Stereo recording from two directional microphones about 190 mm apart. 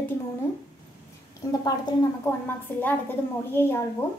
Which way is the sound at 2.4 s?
10° left (ahead or behind).